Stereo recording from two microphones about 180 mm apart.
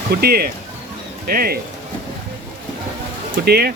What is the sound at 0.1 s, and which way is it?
Speech, 60° right (ahead or behind).